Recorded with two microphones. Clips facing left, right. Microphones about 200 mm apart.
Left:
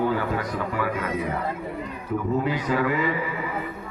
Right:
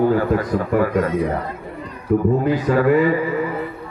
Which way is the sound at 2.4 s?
45° right (ahead or behind).